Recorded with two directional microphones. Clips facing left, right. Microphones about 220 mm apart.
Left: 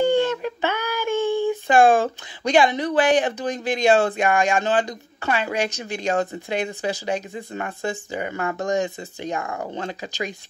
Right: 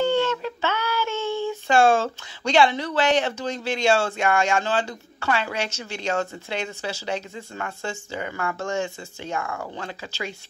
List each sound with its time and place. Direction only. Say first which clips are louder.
0.0 s speech: left 3 dB; 15° left (ahead or behind)